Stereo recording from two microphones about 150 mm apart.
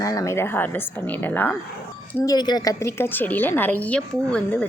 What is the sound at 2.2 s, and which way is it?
A woman's voice, 25° left (ahead or behind).